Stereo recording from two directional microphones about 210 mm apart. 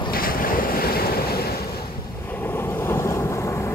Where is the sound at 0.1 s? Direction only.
45° left (ahead or behind).